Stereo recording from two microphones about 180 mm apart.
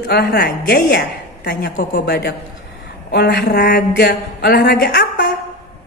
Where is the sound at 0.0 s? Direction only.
60° left (ahead or behind).